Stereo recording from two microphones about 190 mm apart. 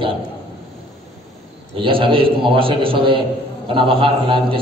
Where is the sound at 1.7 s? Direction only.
25° right (ahead or behind).